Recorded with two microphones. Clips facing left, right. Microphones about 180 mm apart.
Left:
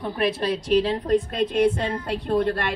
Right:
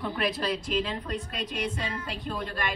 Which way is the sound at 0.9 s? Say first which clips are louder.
Left 12 dB; 50° left (ahead or behind).